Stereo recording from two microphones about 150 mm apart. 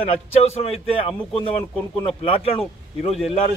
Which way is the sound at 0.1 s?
45° left (ahead or behind).